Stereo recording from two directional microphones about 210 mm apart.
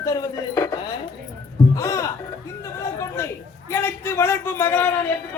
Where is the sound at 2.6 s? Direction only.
15° left (ahead or behind).